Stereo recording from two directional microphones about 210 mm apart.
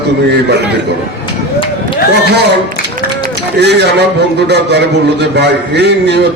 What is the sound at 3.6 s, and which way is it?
A man's voice, 50° right (ahead or behind).